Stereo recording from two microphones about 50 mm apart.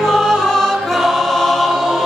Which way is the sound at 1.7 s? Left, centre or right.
Centre.